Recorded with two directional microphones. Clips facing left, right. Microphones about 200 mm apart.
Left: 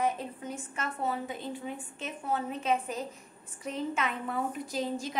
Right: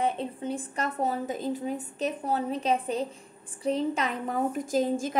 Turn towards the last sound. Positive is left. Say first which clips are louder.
# right 7 dB
turn(degrees=-50)  # may be behind; listen again after turning